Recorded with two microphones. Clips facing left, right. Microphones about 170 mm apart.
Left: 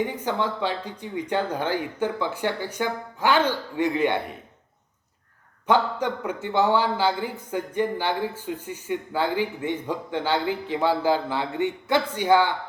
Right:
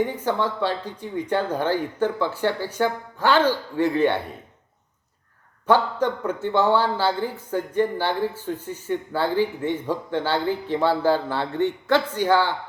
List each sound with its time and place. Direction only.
0.1 s speech: 15° left (ahead or behind)
5.6 s speech: 15° left (ahead or behind)